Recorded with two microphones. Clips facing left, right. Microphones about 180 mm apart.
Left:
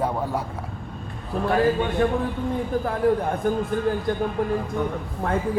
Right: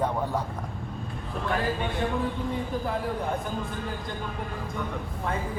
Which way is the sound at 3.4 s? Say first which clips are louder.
Left 10 dB; 55° left (ahead or behind).